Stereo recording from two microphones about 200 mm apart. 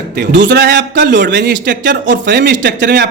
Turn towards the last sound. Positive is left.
turn(degrees=-60)  # may be behind; listen again after turning